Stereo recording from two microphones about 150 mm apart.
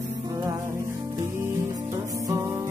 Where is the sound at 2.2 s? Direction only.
15° right (ahead or behind).